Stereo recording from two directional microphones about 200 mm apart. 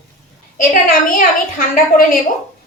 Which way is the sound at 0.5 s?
40° left (ahead or behind).